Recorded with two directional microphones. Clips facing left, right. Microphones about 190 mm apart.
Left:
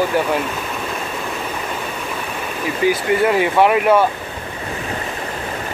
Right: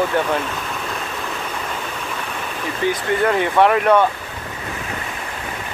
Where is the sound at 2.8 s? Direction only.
5° left (ahead or behind).